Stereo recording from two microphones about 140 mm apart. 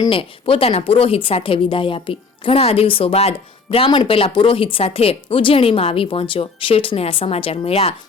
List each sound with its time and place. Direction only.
0.1 s speech: 40° left (ahead or behind)